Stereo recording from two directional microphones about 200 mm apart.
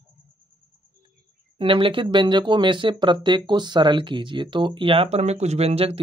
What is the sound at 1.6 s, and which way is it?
Speech, 25° right (ahead or behind).